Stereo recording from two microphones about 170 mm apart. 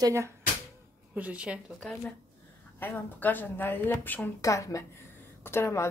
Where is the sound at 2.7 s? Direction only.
10° left (ahead or behind).